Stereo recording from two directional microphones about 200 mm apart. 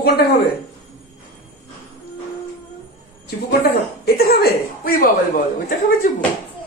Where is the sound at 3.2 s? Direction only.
50° left (ahead or behind).